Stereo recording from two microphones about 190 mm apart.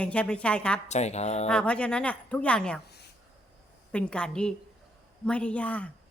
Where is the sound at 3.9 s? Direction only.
5° left (ahead or behind).